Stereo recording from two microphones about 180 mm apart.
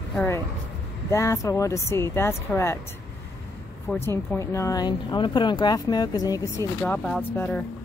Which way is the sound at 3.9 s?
10° left (ahead or behind).